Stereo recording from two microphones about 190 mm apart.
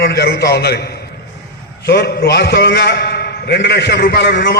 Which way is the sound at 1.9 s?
55° left (ahead or behind).